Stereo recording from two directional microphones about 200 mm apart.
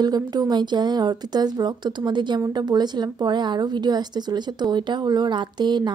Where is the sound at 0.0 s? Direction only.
20° right (ahead or behind).